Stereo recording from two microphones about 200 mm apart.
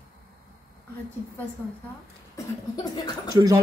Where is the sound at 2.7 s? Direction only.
20° left (ahead or behind).